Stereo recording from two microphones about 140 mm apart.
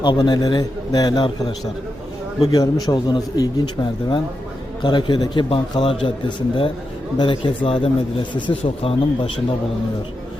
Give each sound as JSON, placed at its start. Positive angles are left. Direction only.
{"t": 0.0, "sound": "a man's voice", "side_deg": 30}
{"t": 4.8, "sound": "a man's voice", "side_deg": 35}